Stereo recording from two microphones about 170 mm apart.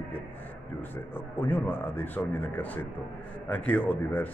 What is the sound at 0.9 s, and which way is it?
A man's voice, 10° left (ahead or behind).